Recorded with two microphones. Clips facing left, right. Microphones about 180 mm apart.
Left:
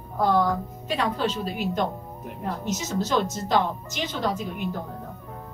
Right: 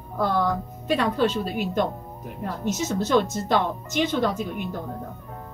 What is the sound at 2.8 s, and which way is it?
Speech, 55° right (ahead or behind).